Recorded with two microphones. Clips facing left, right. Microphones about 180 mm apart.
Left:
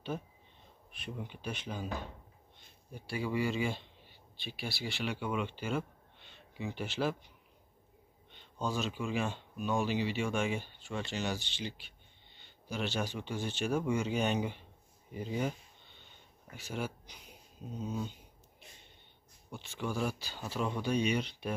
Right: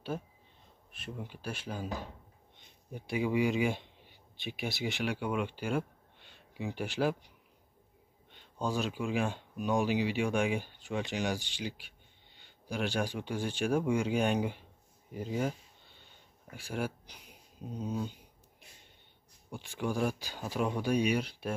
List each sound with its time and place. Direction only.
1.0 s speech: 5° right (ahead or behind)
8.5 s speech: 10° right (ahead or behind)
19.5 s speech: 15° right (ahead or behind)